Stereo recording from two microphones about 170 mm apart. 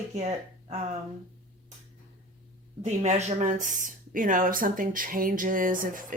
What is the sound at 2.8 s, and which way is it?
Speech, 45° right (ahead or behind).